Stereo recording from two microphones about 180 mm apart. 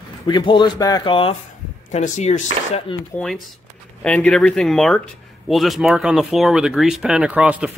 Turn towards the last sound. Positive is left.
turn(degrees=-5)  # may be behind; listen again after turning